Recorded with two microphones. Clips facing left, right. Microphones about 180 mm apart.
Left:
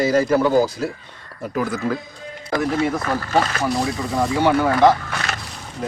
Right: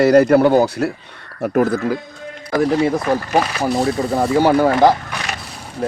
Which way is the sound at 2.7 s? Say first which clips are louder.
Right 4 dB; 15° right (ahead or behind).